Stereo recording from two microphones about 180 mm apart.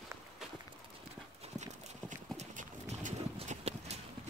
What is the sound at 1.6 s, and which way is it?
Clip-clop, 45° right (ahead or behind).